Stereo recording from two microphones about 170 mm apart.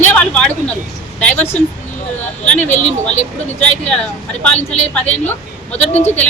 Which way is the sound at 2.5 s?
45° left (ahead or behind).